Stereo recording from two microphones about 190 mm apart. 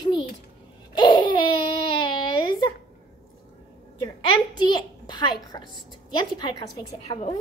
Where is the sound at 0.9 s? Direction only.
25° left (ahead or behind).